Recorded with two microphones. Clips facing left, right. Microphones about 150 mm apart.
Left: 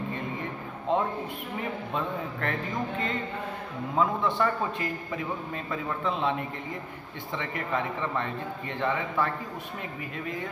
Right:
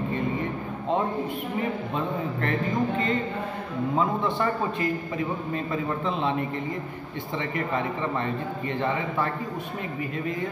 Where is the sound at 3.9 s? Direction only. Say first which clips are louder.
Even; centre (ahead or behind).